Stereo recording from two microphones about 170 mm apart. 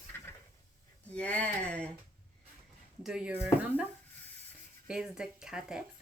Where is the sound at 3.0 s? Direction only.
5° right (ahead or behind).